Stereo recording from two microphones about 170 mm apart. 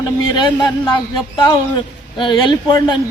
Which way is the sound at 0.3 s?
25° left (ahead or behind).